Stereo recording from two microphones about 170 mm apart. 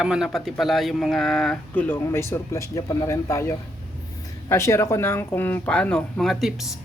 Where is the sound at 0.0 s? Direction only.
5° right (ahead or behind).